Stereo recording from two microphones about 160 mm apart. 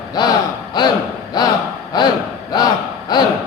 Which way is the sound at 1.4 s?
25° left (ahead or behind).